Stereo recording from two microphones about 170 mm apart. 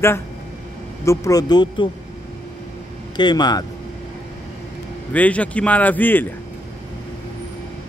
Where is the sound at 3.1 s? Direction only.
25° left (ahead or behind).